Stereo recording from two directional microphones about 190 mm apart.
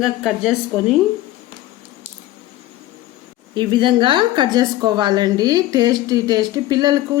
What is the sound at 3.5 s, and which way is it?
A woman's voice, 25° right (ahead or behind).